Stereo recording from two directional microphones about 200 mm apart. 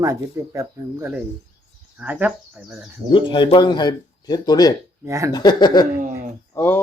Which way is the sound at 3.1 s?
25° left (ahead or behind).